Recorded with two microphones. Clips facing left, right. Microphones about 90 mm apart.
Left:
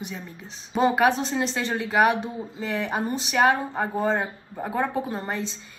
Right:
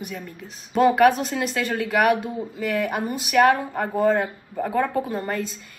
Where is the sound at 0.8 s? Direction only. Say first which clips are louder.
Right 4 dB; 30° left (ahead or behind).